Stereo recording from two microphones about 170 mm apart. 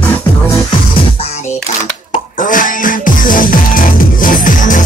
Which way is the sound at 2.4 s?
50° left (ahead or behind).